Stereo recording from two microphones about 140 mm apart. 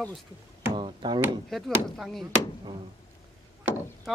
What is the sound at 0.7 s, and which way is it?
Speech, 35° right (ahead or behind).